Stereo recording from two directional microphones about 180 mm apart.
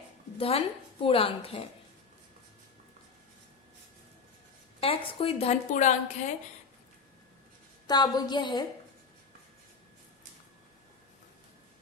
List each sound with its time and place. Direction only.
0.3 s a woman's voice: 30° left (ahead or behind)
4.8 s a woman's voice: 30° left (ahead or behind)
5.7 s a woman's voice: 40° left (ahead or behind)
7.9 s a woman's voice: 20° left (ahead or behind)